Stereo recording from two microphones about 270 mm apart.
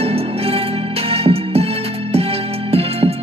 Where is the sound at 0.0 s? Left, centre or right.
Right.